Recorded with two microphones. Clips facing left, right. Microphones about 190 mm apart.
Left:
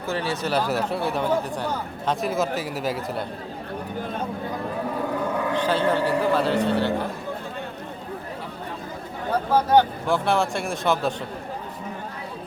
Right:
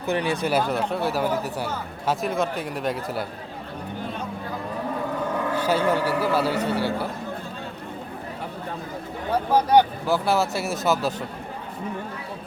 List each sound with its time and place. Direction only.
0.0 s a man's voice: 15° right (ahead or behind)
0.7 s speech: 5° left (ahead or behind)
5.5 s a man's voice: 10° right (ahead or behind)
9.5 s a man's voice: 15° right (ahead or behind)
10.2 s speech: 5° right (ahead or behind)